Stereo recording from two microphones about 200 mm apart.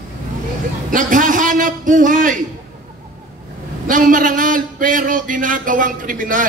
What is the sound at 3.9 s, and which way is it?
A man's voice, 40° right (ahead or behind).